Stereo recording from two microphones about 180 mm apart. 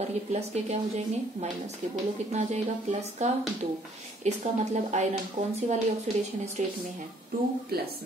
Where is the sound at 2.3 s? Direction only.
40° right (ahead or behind).